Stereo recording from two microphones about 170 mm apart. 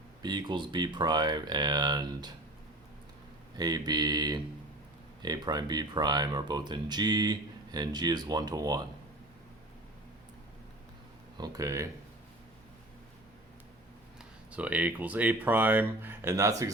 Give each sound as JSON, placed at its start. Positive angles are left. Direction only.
{"t": 0.2, "sound": "speech", "side_deg": -25}
{"t": 3.6, "sound": "speech", "side_deg": -25}
{"t": 11.3, "sound": "speech", "side_deg": -20}
{"t": 14.2, "sound": "speech", "side_deg": -10}